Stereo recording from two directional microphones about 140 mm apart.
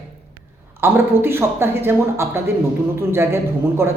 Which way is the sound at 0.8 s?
15° right (ahead or behind).